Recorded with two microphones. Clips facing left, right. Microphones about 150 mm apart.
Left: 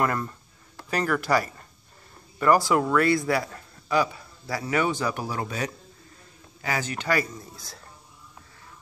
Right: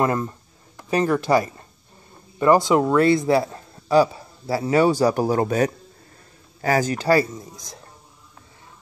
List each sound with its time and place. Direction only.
0.0 s a man's voice: 25° right (ahead or behind)
7.3 s a man's voice: 20° right (ahead or behind)